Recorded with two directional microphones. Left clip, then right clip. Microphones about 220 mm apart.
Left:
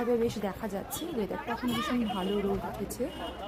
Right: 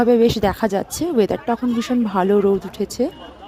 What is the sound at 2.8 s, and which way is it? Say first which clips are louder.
Speech: right 13 dB; 40° right (ahead or behind).